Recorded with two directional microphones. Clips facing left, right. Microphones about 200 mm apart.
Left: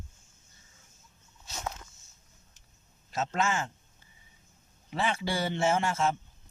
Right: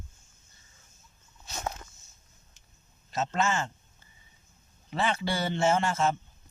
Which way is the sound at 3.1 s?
10° left (ahead or behind).